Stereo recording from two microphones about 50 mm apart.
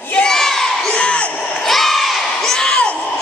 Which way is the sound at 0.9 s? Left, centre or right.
Left.